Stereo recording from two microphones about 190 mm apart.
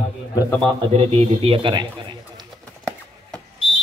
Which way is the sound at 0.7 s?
35° right (ahead or behind).